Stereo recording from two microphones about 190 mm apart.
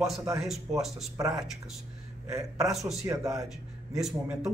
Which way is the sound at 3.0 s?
15° right (ahead or behind).